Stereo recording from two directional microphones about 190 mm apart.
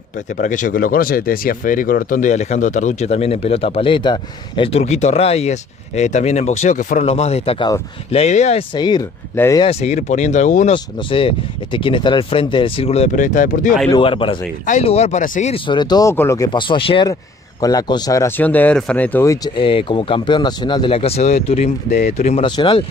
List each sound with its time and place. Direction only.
0.4 s speech: 45° left (ahead or behind)
8.7 s speech: 25° left (ahead or behind)
9.7 s speech: 35° left (ahead or behind)
11.1 s speech: 25° left (ahead or behind); by 13.7 s 45° left (ahead or behind)
13.9 s speech: 25° left (ahead or behind)
15.5 s speech: 25° left (ahead or behind)